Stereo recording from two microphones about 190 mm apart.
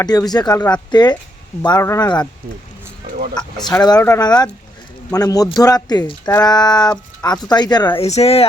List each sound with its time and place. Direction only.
0.0 s speech: 20° left (ahead or behind)
3.8 s speech: 15° left (ahead or behind); by 8.4 s 30° left (ahead or behind)